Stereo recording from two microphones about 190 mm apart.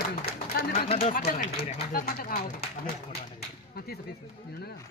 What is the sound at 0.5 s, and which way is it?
Bird, 55° left (ahead or behind).